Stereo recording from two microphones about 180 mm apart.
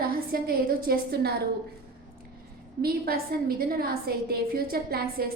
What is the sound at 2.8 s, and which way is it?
A woman's voice, 55° right (ahead or behind).